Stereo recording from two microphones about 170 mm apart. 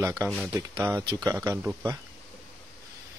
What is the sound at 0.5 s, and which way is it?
Speech, 20° right (ahead or behind).